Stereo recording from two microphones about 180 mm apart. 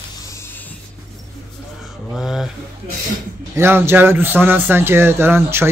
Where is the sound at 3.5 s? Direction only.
15° right (ahead or behind).